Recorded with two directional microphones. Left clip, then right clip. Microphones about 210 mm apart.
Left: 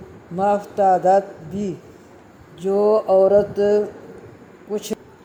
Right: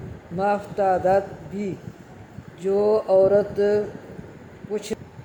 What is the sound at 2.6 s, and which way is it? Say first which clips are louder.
Music: left 3 dB; 20° left (ahead or behind).